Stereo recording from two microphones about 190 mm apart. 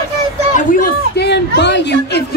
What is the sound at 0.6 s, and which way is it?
Speech, 45° left (ahead or behind).